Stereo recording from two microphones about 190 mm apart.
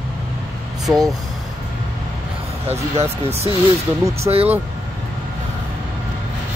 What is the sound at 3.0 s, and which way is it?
Speech, 35° right (ahead or behind).